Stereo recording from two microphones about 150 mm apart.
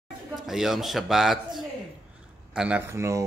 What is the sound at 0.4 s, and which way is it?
Speech, centre (ahead or behind).